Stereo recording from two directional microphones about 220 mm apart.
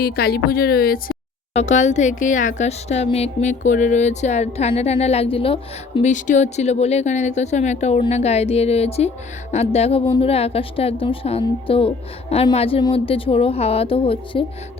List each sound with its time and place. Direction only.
0.0 s speech: 45° left (ahead or behind)
1.5 s speech: 30° left (ahead or behind)